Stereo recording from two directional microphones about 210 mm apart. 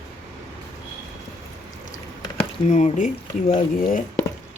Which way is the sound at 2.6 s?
35° left (ahead or behind).